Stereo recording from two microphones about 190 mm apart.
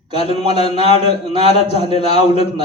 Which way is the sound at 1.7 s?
35° left (ahead or behind).